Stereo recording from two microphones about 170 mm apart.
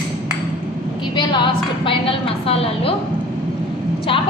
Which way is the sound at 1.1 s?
30° left (ahead or behind).